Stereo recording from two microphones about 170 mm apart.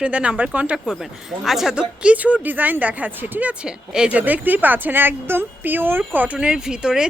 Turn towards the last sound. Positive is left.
turn(degrees=-5)  # may be behind; listen again after turning